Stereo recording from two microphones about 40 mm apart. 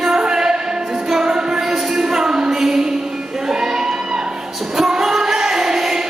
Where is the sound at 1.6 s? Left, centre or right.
Centre.